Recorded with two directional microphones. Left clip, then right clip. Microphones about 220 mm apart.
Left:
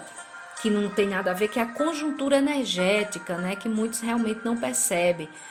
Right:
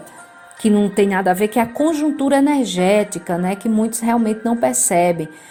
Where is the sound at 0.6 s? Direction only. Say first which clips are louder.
Right 8 dB; 25° right (ahead or behind).